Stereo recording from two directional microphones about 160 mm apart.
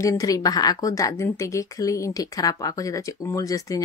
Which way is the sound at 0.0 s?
20° left (ahead or behind).